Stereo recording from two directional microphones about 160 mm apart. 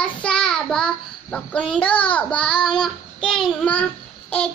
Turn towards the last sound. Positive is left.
turn(degrees=10)  # may be behind; listen again after turning